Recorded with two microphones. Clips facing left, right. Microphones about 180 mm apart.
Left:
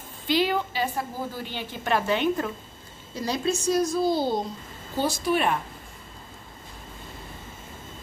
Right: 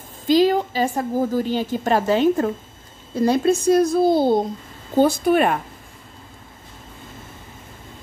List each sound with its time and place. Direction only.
0.3 s a woman's voice: 40° right (ahead or behind)
3.2 s speech: 55° right (ahead or behind)